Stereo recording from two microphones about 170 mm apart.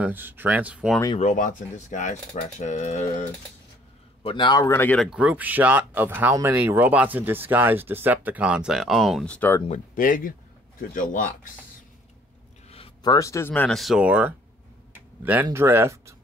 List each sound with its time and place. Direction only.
0.0 s speech: 10° right (ahead or behind)
1.2 s speech: 50° left (ahead or behind)
4.2 s a man's voice: 30° left (ahead or behind)
4.6 s speech: 10° left (ahead or behind)
9.7 s speech: 50° left (ahead or behind)
12.6 s a sound: 35° left (ahead or behind)
13.1 s speech: 20° left (ahead or behind); by 14.3 s 5° right (ahead or behind)
15.4 s speech: 15° right (ahead or behind)